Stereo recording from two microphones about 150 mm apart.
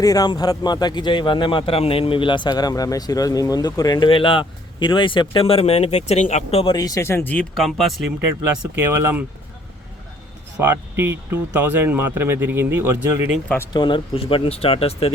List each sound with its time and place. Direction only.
0.0 s a man's voice: 25° left (ahead or behind); by 6.7 s 40° left (ahead or behind)
6.7 s speech: 25° left (ahead or behind); by 8.0 s centre (ahead or behind)
8.4 s speech: 20° right (ahead or behind)
10.6 s speech: 15° right (ahead or behind)
13.7 s a man's voice: 30° left (ahead or behind)